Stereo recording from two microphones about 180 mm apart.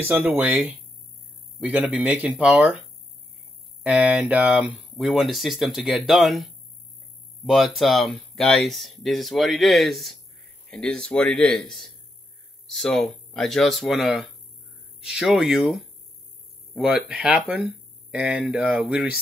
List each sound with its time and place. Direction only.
0.1 s speech: 10° right (ahead or behind)
3.8 s speech: 5° right (ahead or behind)